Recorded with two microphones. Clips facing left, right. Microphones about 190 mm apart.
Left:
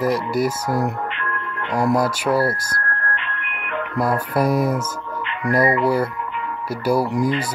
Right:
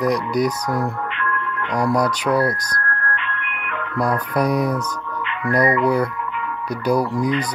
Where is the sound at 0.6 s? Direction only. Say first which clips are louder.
Left 1 dB; 30° left (ahead or behind).